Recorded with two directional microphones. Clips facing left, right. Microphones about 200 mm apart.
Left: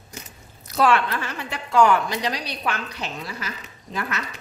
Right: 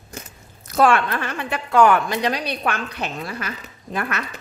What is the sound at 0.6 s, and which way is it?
A woman's voice, 50° right (ahead or behind).